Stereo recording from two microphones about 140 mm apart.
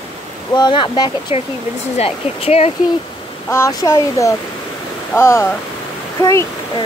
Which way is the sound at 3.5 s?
20° left (ahead or behind).